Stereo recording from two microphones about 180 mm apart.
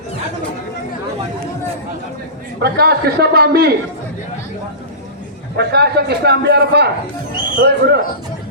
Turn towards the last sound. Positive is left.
turn(degrees=-70)  # may be behind; listen again after turning